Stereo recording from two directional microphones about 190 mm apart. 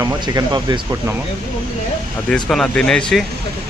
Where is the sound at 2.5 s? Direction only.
5° left (ahead or behind).